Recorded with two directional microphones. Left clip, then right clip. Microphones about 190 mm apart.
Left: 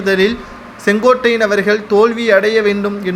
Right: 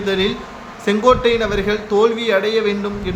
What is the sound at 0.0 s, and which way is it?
A man's voice, 30° left (ahead or behind).